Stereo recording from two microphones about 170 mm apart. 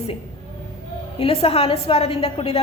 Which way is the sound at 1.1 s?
35° left (ahead or behind).